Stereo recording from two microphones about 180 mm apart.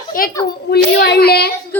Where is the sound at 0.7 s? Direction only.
65° left (ahead or behind).